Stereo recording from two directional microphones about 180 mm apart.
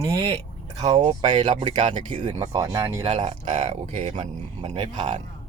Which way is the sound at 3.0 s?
30° right (ahead or behind).